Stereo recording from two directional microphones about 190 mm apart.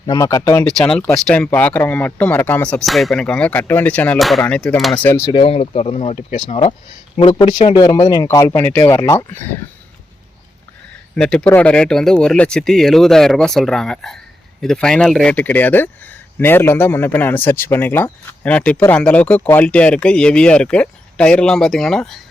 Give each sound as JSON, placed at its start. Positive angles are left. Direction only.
{"t": 0.0, "sound": "speech", "side_deg": 20}
{"t": 0.6, "sound": "speech", "side_deg": 5}
{"t": 5.3, "sound": "speech", "side_deg": 30}
{"t": 7.8, "sound": "speech", "side_deg": 20}
{"t": 11.1, "sound": "speech", "side_deg": 5}